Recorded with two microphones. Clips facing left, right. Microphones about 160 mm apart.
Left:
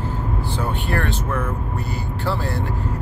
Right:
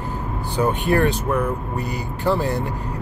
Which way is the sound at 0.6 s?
15° right (ahead or behind).